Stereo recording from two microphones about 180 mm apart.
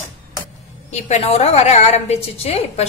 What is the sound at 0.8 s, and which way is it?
A woman's voice, 40° left (ahead or behind).